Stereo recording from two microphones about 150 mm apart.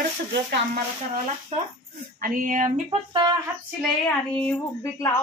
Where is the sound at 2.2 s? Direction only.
65° right (ahead or behind).